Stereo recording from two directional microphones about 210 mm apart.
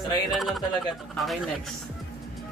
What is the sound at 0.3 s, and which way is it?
Speech, centre (ahead or behind).